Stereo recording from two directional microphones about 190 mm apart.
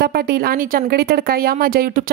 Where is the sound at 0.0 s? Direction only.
55° right (ahead or behind).